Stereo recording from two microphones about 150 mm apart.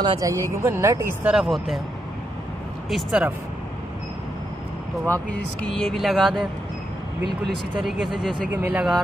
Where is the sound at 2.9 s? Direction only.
5° right (ahead or behind).